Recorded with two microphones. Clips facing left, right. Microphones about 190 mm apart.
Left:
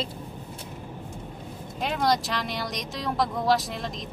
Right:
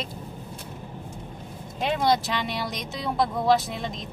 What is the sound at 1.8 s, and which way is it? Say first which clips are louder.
Speech: right 2 dB; centre (ahead or behind).